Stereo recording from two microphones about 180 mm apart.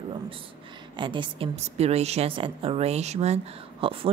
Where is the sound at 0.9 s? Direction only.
25° right (ahead or behind).